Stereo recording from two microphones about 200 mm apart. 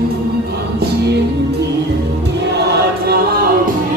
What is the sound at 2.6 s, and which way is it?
Choir, 55° right (ahead or behind).